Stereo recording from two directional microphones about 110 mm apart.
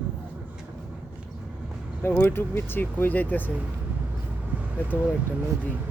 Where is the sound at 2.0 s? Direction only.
20° left (ahead or behind).